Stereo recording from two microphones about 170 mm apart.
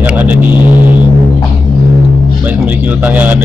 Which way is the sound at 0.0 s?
10° right (ahead or behind).